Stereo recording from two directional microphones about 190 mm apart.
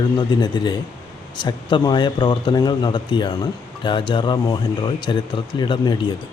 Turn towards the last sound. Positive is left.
turn(degrees=25)  # may be behind; listen again after turning